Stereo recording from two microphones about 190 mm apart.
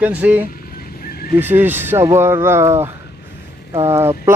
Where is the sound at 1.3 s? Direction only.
10° right (ahead or behind).